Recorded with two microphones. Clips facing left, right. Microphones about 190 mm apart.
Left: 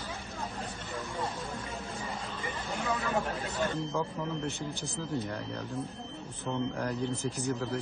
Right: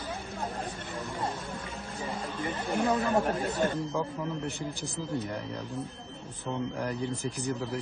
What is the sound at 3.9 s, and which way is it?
Speech, 10° right (ahead or behind).